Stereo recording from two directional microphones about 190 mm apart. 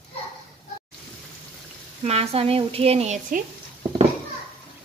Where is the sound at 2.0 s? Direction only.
35° right (ahead or behind).